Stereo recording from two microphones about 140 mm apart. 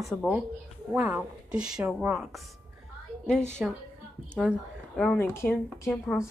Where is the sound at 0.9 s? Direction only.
10° right (ahead or behind).